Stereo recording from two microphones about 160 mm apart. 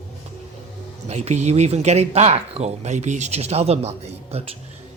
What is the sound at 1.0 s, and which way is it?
Speech, 45° right (ahead or behind).